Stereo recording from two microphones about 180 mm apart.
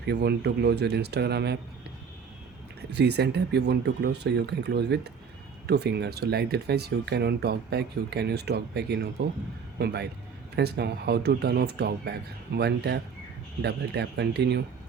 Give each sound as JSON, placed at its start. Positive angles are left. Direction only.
{"t": 0.1, "sound": "speech", "side_deg": -65}
{"t": 2.9, "sound": "speech", "side_deg": -70}